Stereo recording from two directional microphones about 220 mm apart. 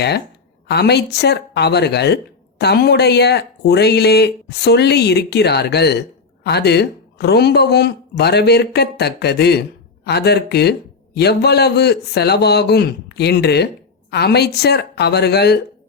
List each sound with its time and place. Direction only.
0.7 s speech: 50° left (ahead or behind)